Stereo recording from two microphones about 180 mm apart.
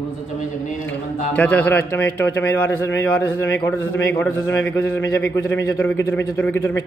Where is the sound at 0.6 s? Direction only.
45° left (ahead or behind).